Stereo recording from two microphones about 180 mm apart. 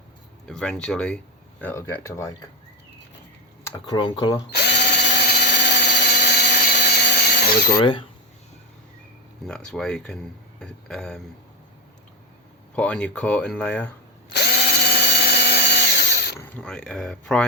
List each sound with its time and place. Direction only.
0.4 s speech: 5° left (ahead or behind)
3.6 s speech: 25° left (ahead or behind)
4.5 s drill: 70° left (ahead or behind)
7.7 s speech: 25° left (ahead or behind)
9.5 s speech: 5° left (ahead or behind)
12.7 s speech: 5° left (ahead or behind)
14.3 s drill: 65° left (ahead or behind)
16.4 s speech: 10° left (ahead or behind)